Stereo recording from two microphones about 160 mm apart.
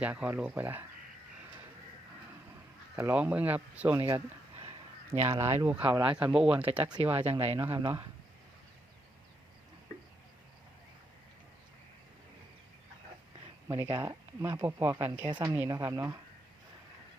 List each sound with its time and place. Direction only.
0.0 s speech: 10° right (ahead or behind)
2.9 s speech: 10° right (ahead or behind)
5.8 s speech: 30° right (ahead or behind)
6.1 s speech: 10° right (ahead or behind)
6.7 s speech: 30° right (ahead or behind)
13.7 s speech: 15° right (ahead or behind)
15.3 s speech: 30° right (ahead or behind)
15.5 s speech: 15° right (ahead or behind)